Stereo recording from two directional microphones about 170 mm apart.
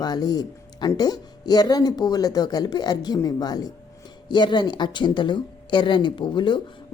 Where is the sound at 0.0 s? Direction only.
25° left (ahead or behind).